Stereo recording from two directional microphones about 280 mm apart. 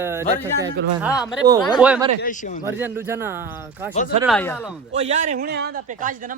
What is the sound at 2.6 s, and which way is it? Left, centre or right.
Speech, centre.